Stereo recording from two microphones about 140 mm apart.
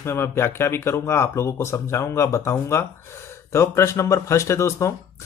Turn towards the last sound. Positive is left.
turn(degrees=20)  # may be behind; listen again after turning